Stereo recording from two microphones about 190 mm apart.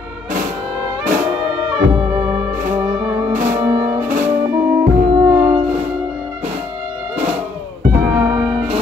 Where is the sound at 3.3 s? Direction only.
40° right (ahead or behind).